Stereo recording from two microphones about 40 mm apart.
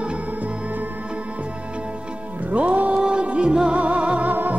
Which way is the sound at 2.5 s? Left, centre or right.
Right.